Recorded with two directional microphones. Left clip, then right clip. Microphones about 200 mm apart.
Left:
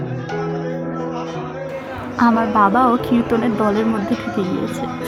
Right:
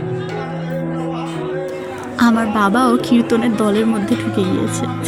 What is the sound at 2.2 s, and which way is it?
A woman's voice, 20° right (ahead or behind).